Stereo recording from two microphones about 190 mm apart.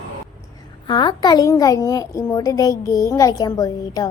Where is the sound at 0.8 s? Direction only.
20° left (ahead or behind).